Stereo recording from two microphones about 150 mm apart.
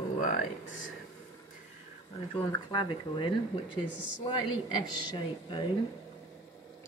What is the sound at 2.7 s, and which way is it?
Speech, 30° left (ahead or behind).